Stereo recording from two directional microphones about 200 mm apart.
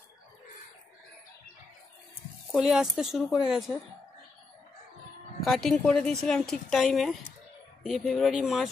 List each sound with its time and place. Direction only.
2.5 s speech: centre (ahead or behind)
5.4 s speech: centre (ahead or behind)